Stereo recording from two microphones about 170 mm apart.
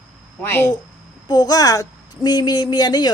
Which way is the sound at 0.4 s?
20° left (ahead or behind).